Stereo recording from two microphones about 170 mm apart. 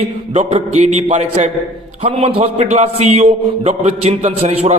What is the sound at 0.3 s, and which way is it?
A man's voice, 40° right (ahead or behind).